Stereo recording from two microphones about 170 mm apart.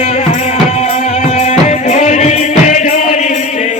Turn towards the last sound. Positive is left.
turn(degrees=45)  # may be behind; listen again after turning